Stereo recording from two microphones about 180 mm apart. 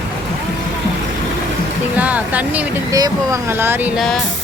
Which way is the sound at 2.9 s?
20° right (ahead or behind).